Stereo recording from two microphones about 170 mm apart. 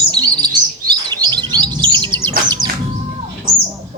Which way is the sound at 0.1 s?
25° right (ahead or behind).